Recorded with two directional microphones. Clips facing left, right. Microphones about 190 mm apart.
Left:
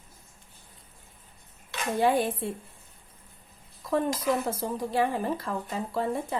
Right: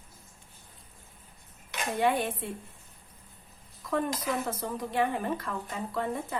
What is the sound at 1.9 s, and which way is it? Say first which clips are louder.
Speech: left 3 dB; 35° left (ahead or behind).